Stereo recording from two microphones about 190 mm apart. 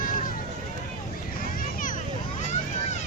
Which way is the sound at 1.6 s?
45° left (ahead or behind).